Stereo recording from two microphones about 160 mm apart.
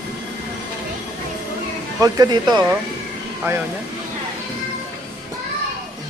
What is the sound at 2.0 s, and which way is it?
Speech, 25° right (ahead or behind).